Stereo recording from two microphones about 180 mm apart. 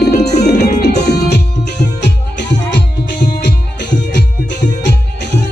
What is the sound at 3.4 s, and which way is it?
Music, 70° left (ahead or behind).